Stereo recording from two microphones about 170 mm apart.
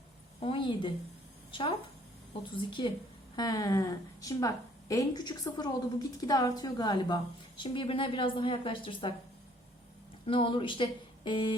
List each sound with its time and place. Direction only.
0.3 s speech: 30° left (ahead or behind)
10.2 s speech: 30° left (ahead or behind)